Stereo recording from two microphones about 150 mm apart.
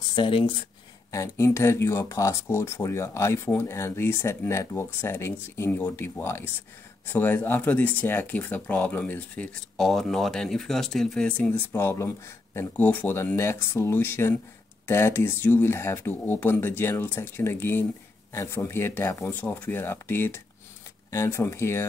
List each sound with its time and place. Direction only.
0.1 s speech: 35° left (ahead or behind)
1.1 s speech: 20° left (ahead or behind)